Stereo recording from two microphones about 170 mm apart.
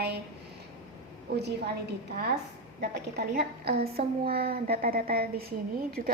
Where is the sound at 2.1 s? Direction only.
70° right (ahead or behind).